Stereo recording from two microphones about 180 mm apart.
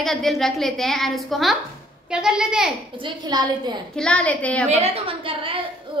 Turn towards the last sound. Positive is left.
turn(degrees=-30)  # may be behind; listen again after turning